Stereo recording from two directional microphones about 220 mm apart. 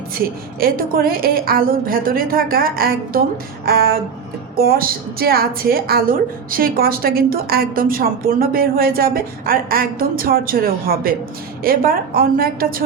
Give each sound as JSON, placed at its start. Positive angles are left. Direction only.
{"t": 0.6, "sound": "a woman's voice", "side_deg": -45}